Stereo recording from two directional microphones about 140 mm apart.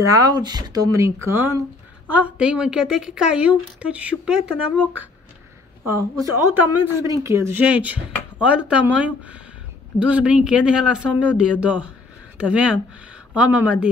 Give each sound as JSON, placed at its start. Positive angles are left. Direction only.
{"t": 0.0, "sound": "a woman's voice", "side_deg": -25}
{"t": 5.9, "sound": "a woman's voice", "side_deg": -20}